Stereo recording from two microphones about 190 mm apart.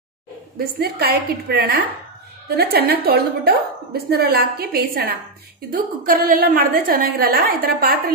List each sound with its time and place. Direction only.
0.7 s a woman's voice: 55° right (ahead or behind)